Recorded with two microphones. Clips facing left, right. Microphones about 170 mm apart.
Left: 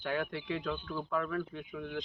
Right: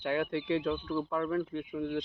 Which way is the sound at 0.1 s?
25° right (ahead or behind).